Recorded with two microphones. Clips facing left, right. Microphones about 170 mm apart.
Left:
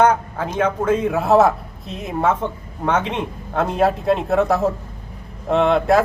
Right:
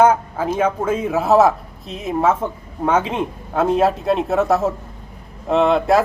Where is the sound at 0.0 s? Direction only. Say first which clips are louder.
Right 2 dB; 5° right (ahead or behind).